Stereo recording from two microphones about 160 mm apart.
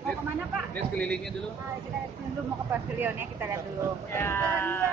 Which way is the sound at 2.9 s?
15° right (ahead or behind).